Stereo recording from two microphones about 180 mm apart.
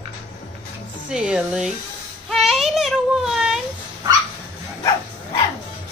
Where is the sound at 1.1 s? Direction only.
5° right (ahead or behind).